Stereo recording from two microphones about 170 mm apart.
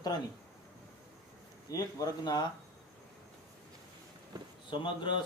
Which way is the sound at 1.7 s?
20° left (ahead or behind).